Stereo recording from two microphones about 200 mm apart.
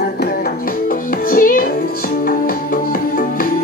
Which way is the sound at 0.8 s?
45° left (ahead or behind).